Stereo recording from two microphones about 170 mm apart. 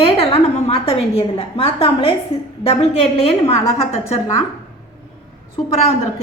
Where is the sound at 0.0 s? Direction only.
35° left (ahead or behind).